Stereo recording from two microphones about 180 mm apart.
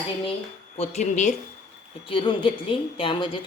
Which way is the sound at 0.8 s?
40° left (ahead or behind).